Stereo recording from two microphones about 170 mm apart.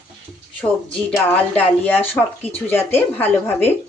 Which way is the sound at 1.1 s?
10° left (ahead or behind).